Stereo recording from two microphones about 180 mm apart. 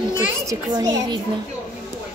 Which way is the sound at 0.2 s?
20° right (ahead or behind).